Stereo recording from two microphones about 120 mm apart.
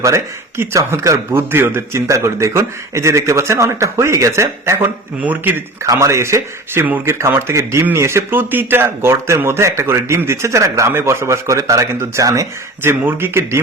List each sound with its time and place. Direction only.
0.0 s speech: 25° right (ahead or behind)
5.8 s speech: 25° right (ahead or behind)